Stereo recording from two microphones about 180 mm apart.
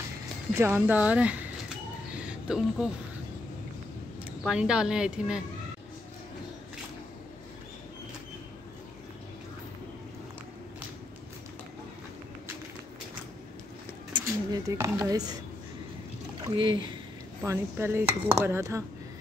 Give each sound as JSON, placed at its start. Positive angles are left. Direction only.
{"t": 0.6, "sound": "speech", "side_deg": -15}
{"t": 2.2, "sound": "a sound", "side_deg": -5}
{"t": 4.4, "sound": "a woman's voice", "side_deg": -5}
{"t": 14.1, "sound": "speech", "side_deg": -20}
{"t": 16.3, "sound": "speech", "side_deg": -25}
{"t": 17.4, "sound": "speech", "side_deg": -15}